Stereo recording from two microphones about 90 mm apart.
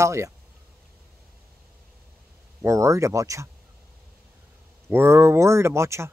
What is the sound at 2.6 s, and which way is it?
Speech, 35° right (ahead or behind).